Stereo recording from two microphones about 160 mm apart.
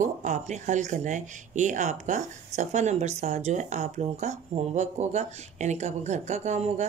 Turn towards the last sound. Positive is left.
turn(degrees=-45)  # may be behind; listen again after turning